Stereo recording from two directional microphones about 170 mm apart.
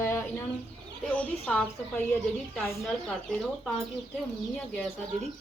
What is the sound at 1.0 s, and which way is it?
Speech, 10° left (ahead or behind).